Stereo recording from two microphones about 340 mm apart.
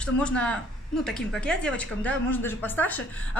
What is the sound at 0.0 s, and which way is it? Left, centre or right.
A woman's voice, centre.